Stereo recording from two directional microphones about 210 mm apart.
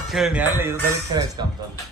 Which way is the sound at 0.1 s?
5° right (ahead or behind).